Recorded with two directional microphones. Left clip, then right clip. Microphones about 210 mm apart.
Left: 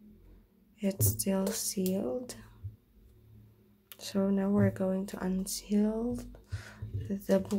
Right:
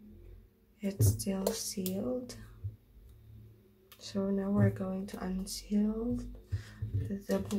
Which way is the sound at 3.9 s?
40° left (ahead or behind).